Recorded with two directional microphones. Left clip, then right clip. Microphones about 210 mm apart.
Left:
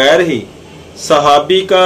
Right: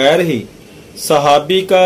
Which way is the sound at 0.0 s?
35° right (ahead or behind).